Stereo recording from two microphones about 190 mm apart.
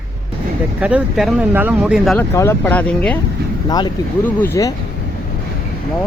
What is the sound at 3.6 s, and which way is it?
Speech, 20° left (ahead or behind).